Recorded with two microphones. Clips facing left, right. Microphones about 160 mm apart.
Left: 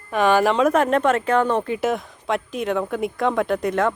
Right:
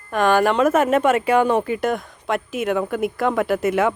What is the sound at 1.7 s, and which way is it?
A woman's voice, centre (ahead or behind).